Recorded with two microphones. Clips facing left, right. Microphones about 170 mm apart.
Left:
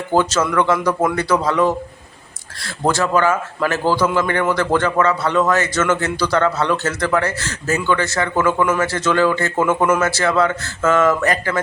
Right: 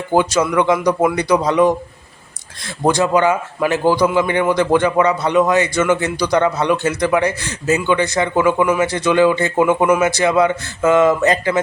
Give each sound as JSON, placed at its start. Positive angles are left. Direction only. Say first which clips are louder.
{"t": 0.1, "sound": "a man's voice", "louder": "right 2 dB", "side_deg": -15}